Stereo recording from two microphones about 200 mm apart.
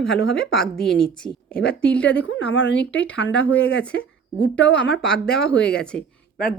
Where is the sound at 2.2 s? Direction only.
85° left.